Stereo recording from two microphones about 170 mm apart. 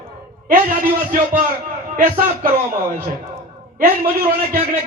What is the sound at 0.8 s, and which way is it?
A man's voice, 55° right (ahead or behind).